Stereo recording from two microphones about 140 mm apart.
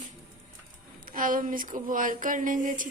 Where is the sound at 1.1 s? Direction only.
75° right (ahead or behind).